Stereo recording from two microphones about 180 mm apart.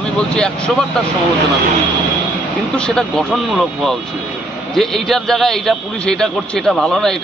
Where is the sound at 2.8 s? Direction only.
5° left (ahead or behind).